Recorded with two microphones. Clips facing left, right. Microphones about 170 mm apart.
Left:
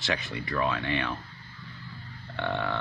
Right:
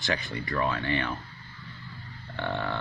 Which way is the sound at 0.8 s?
90° left.